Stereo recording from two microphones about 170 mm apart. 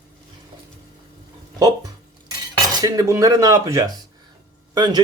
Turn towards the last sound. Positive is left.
turn(degrees=-25)  # may be behind; listen again after turning